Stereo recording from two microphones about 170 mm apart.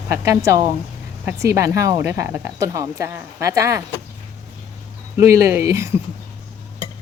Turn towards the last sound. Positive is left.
turn(degrees=-15)  # may be behind; listen again after turning